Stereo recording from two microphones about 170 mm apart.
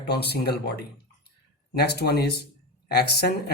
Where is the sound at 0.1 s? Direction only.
75° left (ahead or behind).